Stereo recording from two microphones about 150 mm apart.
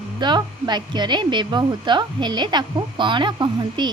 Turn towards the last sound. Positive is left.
turn(degrees=-30)  # may be behind; listen again after turning